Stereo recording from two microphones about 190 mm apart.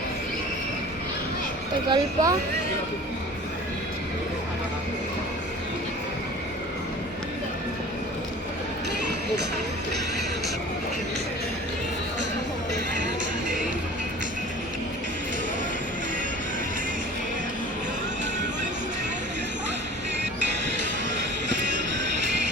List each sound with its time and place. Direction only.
1.9 s speech: 20° right (ahead or behind)